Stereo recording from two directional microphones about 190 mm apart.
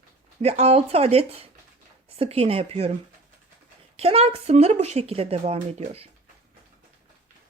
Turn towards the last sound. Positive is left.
turn(degrees=-30)  # may be behind; listen again after turning